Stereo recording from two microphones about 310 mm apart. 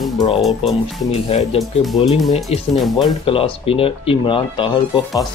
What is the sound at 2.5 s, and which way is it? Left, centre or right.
Speech, centre.